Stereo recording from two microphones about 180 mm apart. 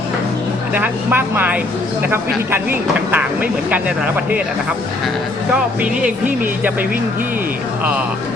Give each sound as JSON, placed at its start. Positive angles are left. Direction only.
{"t": 0.7, "sound": "speech", "side_deg": -10}
{"t": 5.5, "sound": "speech", "side_deg": -10}